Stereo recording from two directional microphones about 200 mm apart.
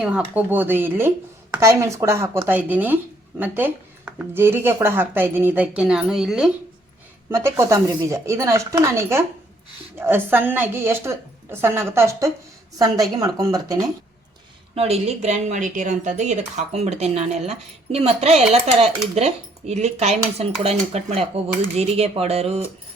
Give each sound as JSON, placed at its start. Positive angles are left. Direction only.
{"t": 0.0, "sound": "speech", "side_deg": -5}
{"t": 7.3, "sound": "speech", "side_deg": -15}
{"t": 14.8, "sound": "speech", "side_deg": -30}